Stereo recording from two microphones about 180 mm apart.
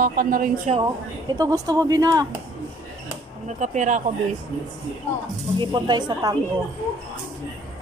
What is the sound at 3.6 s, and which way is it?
Speech, 45° right (ahead or behind).